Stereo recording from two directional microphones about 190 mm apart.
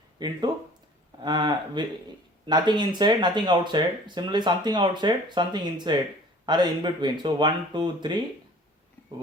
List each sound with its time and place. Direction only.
0.5 s speech: 20° right (ahead or behind)